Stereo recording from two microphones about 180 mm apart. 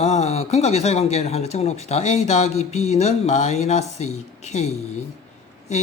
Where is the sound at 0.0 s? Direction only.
35° left (ahead or behind).